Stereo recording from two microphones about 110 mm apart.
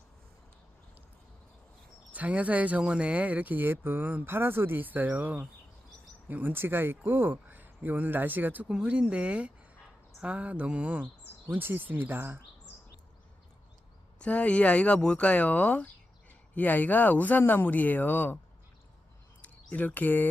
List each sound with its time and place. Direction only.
2.1 s speech: 15° right (ahead or behind)
14.2 s speech: 10° left (ahead or behind)
19.4 s speech: 15° left (ahead or behind)